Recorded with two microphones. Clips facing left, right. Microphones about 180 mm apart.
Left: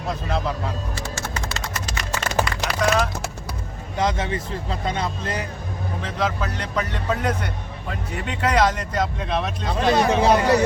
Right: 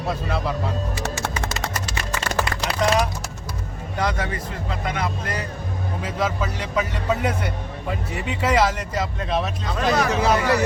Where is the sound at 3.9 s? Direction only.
20° left (ahead or behind).